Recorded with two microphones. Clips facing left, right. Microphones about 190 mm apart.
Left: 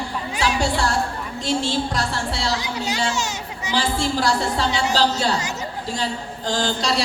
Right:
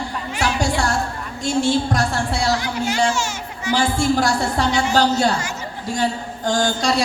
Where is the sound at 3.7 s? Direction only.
50° right (ahead or behind).